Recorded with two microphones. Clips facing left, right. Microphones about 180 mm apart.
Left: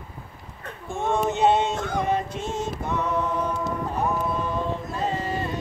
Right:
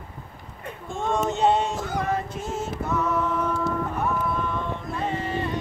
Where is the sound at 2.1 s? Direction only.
25° left (ahead or behind).